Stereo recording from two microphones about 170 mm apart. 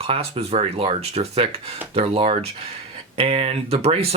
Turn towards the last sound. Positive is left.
turn(degrees=-35)  # may be behind; listen again after turning